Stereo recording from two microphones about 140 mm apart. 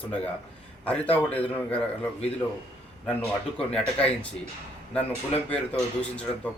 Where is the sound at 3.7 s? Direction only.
5° left (ahead or behind).